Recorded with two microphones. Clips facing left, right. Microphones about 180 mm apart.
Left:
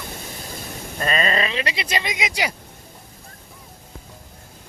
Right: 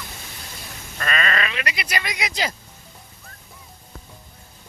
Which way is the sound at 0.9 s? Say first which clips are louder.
Left 3 dB; 30° left (ahead or behind).